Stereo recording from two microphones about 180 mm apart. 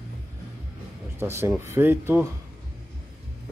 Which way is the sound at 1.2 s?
15° right (ahead or behind).